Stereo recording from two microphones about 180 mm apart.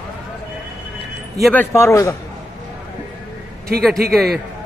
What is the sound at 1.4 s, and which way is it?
Speech, 10° left (ahead or behind).